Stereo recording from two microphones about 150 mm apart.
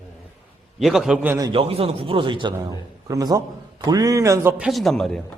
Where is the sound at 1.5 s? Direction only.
40° right (ahead or behind); by 4.6 s 15° right (ahead or behind).